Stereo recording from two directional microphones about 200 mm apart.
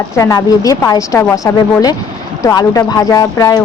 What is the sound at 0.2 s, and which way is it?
A woman's voice, 15° left (ahead or behind).